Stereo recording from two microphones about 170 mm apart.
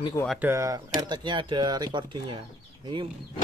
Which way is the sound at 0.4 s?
15° right (ahead or behind).